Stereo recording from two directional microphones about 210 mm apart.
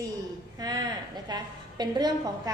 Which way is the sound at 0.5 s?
20° right (ahead or behind).